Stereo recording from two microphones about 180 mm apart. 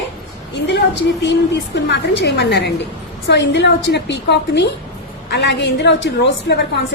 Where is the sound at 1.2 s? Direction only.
75° left (ahead or behind).